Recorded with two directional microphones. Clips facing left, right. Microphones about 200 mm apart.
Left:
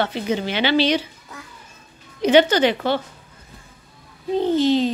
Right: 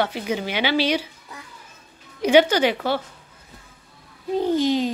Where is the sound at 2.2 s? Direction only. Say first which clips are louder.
Left 1 dB; 10° right (ahead or behind).